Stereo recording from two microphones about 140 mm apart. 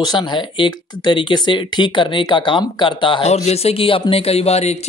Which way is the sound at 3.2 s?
50° left (ahead or behind).